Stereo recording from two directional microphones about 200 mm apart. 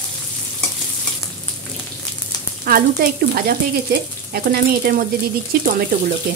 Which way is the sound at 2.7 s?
45° right (ahead or behind).